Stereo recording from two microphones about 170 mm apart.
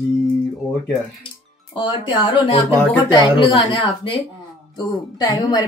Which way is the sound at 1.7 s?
25° left (ahead or behind).